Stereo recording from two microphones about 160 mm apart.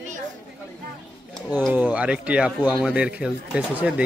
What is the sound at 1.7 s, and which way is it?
Speech, 10° right (ahead or behind).